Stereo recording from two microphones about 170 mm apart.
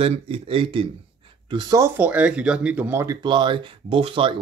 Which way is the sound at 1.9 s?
10° right (ahead or behind).